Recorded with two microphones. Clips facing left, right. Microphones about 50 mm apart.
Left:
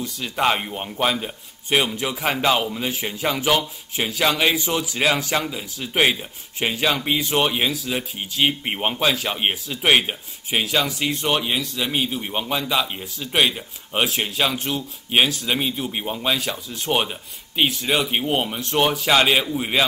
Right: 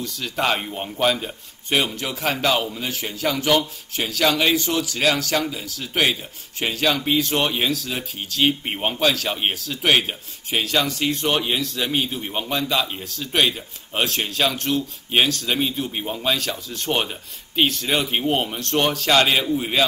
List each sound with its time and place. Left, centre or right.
0.0 s speech: centre